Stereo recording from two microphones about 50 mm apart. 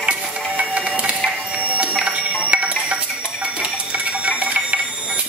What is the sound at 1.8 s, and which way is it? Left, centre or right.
Music, right.